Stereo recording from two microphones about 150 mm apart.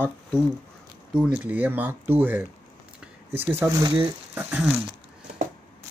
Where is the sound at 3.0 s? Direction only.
15° right (ahead or behind).